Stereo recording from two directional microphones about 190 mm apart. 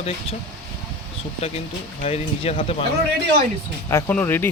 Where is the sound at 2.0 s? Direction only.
40° left (ahead or behind).